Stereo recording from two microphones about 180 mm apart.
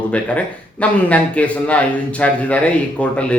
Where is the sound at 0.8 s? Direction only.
5° left (ahead or behind).